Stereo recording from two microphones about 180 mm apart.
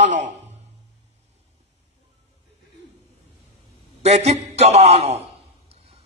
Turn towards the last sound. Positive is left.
turn(degrees=-35)  # may be behind; listen again after turning